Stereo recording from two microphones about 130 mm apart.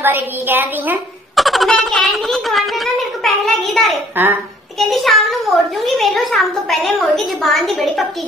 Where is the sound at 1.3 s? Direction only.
Centre (ahead or behind).